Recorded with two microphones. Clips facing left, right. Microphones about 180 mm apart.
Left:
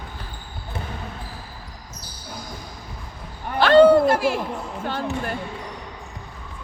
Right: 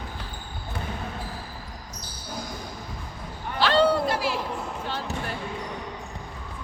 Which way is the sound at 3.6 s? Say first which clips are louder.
Left 8 dB; 50° left (ahead or behind).